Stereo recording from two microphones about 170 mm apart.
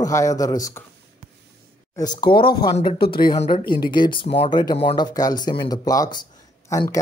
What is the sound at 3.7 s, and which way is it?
Speech, 25° left (ahead or behind).